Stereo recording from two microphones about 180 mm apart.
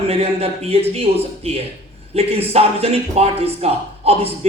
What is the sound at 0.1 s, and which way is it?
Speech, 35° right (ahead or behind).